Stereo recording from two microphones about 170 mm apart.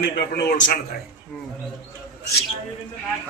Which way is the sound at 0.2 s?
75° left (ahead or behind).